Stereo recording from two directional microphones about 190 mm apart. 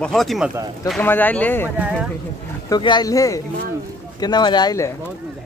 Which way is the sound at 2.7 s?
20° left (ahead or behind).